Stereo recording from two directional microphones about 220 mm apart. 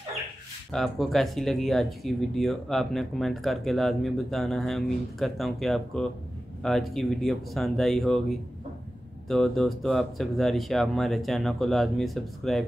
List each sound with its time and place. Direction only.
0.7 s speech: centre (ahead or behind)